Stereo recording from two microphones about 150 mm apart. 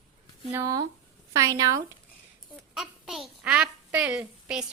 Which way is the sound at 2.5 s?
Centre (ahead or behind).